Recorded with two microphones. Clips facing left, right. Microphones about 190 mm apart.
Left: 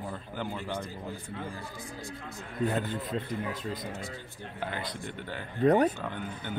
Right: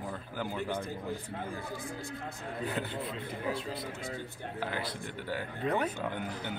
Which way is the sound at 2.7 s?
45° left (ahead or behind).